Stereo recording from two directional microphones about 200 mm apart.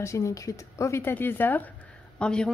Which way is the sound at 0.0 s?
15° left (ahead or behind).